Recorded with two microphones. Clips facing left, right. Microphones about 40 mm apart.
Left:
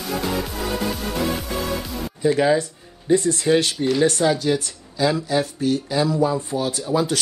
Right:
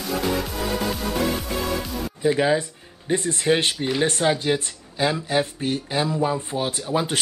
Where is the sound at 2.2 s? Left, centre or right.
Centre.